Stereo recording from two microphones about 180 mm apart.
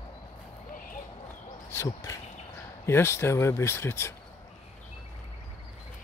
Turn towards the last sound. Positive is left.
turn(degrees=15)  # may be behind; listen again after turning